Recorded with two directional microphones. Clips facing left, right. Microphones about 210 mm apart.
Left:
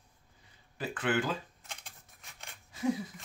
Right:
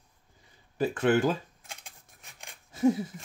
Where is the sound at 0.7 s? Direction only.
45° right (ahead or behind).